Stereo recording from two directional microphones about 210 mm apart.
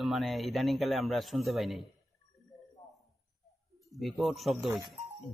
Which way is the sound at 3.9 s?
Centre (ahead or behind).